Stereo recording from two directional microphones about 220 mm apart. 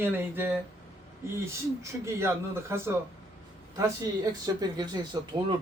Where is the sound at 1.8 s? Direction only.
10° right (ahead or behind).